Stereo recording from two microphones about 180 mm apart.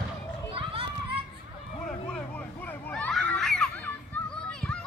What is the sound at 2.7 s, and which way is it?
Children playing, 10° left (ahead or behind).